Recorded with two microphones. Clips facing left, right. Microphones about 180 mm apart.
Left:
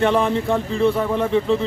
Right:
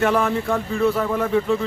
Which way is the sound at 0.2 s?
25° left (ahead or behind).